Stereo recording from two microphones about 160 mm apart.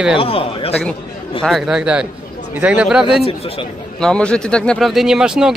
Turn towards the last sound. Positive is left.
turn(degrees=-5)  # may be behind; listen again after turning